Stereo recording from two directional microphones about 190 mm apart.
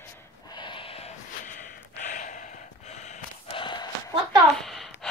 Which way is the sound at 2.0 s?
40° left (ahead or behind).